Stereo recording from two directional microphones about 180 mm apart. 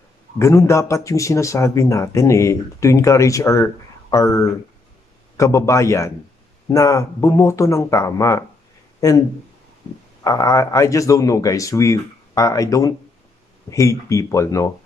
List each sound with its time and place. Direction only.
0.4 s speech: 15° left (ahead or behind)
10.2 s speech: 20° left (ahead or behind)